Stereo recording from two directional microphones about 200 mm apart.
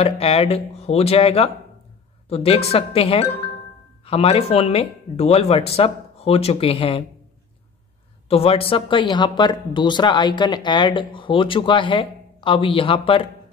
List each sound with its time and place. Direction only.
0.0 s speech: 30° left (ahead or behind)
8.3 s speech: 30° left (ahead or behind)